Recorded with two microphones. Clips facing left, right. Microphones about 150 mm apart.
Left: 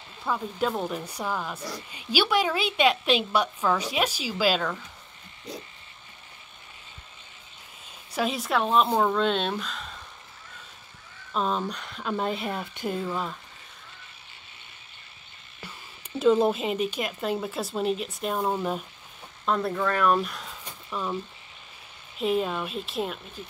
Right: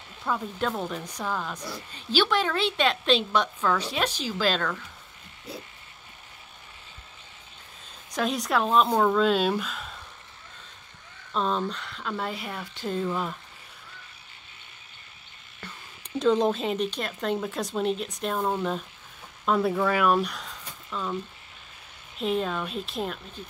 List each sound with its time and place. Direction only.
0.2 s speech: 5° left (ahead or behind)
8.1 s speech: 5° left (ahead or behind)
11.3 s speech: 5° left (ahead or behind); by 12.8 s 25° left (ahead or behind)
12.8 s speech: 5° left (ahead or behind)
15.6 s speech: 5° left (ahead or behind)
19.4 s speech: 5° right (ahead or behind)
22.2 s speech: 5° left (ahead or behind)